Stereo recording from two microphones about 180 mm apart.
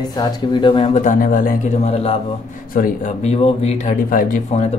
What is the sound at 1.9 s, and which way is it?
Speech, 35° left (ahead or behind).